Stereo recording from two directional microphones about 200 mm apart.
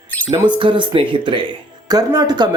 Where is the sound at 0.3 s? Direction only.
25° right (ahead or behind).